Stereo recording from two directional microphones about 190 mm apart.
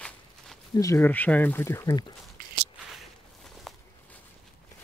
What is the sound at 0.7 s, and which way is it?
Speech, 15° left (ahead or behind).